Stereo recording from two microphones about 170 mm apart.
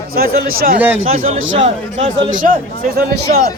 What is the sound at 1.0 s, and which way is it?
A man's voice, 40° right (ahead or behind).